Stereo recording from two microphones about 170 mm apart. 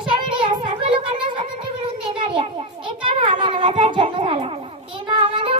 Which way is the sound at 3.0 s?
30° right (ahead or behind).